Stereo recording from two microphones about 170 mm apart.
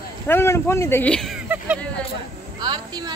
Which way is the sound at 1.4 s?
10° right (ahead or behind).